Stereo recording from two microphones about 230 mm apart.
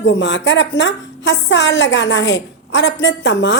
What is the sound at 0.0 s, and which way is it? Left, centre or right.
A woman's voice, left.